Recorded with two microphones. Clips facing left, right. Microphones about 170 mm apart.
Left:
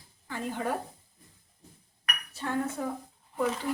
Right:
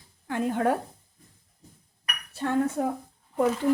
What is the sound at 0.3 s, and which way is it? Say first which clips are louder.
Speech: right 8 dB; 60° right (ahead or behind).